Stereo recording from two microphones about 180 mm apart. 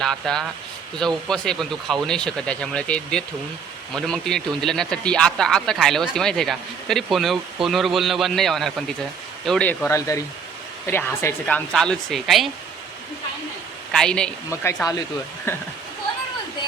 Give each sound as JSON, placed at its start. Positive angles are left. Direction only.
{"t": 0.0, "sound": "a man's voice", "side_deg": 0}
{"t": 13.9, "sound": "a man's voice", "side_deg": 5}
{"t": 14.5, "sound": "speech", "side_deg": 15}